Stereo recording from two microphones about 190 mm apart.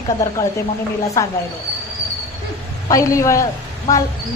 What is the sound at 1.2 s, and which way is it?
Speech, 15° left (ahead or behind).